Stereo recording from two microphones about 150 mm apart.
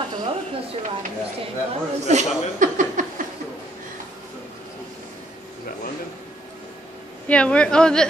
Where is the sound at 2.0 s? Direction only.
55° right (ahead or behind).